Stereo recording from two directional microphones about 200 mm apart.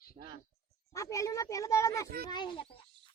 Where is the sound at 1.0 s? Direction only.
15° left (ahead or behind).